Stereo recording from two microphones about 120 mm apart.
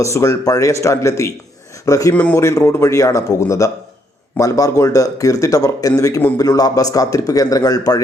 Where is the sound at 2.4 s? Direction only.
25° left (ahead or behind).